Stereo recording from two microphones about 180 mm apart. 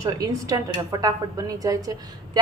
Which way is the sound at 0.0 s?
20° right (ahead or behind).